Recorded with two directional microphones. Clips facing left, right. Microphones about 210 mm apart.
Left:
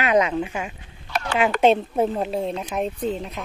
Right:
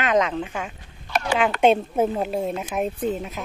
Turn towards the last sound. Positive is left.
turn(degrees=-5)  # may be behind; listen again after turning